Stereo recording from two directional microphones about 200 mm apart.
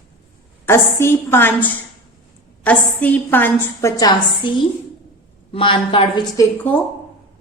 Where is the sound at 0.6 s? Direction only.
10° left (ahead or behind).